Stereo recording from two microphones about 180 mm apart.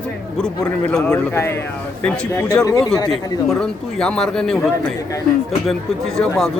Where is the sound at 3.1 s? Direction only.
5° left (ahead or behind).